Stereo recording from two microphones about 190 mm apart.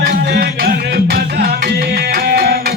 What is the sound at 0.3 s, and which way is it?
Music, 55° right (ahead or behind).